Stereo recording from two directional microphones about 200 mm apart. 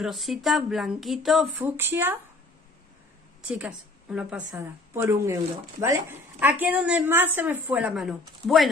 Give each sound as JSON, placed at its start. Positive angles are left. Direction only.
{"t": 0.0, "sound": "a woman's voice", "side_deg": 0}
{"t": 3.4, "sound": "a woman's voice", "side_deg": -5}